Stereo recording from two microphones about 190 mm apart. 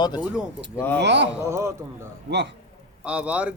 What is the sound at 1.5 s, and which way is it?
Speech, 15° right (ahead or behind).